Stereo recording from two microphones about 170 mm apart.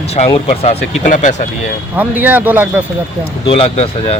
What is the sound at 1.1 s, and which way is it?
Speech, 45° left (ahead or behind).